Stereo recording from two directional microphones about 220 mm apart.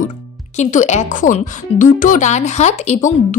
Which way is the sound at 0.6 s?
30° left (ahead or behind).